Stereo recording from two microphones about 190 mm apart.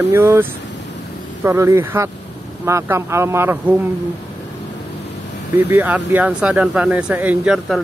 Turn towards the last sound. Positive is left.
turn(degrees=-5)  # may be behind; listen again after turning